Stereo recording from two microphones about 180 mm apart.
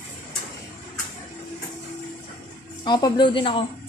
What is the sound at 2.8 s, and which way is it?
Speech, 25° left (ahead or behind).